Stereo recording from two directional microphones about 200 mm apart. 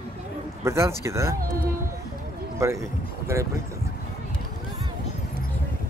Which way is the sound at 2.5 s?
15° right (ahead or behind).